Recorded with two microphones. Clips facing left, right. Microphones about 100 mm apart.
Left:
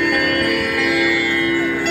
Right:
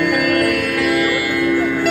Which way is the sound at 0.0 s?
5° right (ahead or behind).